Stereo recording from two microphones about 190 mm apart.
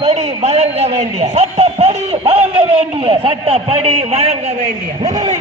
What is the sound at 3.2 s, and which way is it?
Speech, 30° right (ahead or behind).